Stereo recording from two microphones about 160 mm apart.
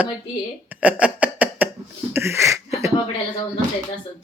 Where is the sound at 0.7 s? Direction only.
10° right (ahead or behind).